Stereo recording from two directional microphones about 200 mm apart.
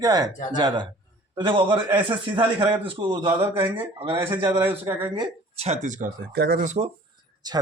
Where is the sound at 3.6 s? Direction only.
10° right (ahead or behind).